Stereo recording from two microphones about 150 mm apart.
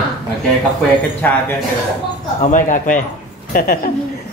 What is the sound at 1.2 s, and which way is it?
Speech, 10° left (ahead or behind).